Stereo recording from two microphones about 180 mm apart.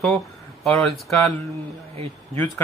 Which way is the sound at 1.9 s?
35° right (ahead or behind).